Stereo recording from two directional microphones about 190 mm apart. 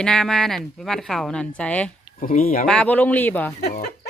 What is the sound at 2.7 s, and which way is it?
Speech, 5° left (ahead or behind).